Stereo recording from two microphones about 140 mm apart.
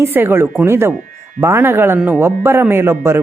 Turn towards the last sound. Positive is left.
turn(degrees=-20)  # may be behind; listen again after turning